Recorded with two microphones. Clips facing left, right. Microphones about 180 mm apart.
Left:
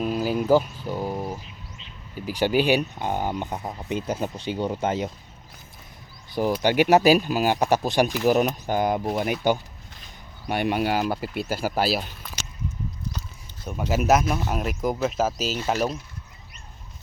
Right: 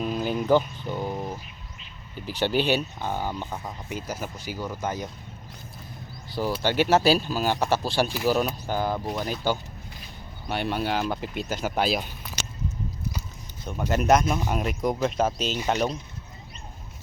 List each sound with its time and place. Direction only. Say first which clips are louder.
0.0 s speech: left 3 dB; 5° left (ahead or behind); by 5.0 s 25° left (ahead or behind)
6.3 s speech: left 4 dB; 15° left (ahead or behind)
13.9 s speech: even; 5° left (ahead or behind)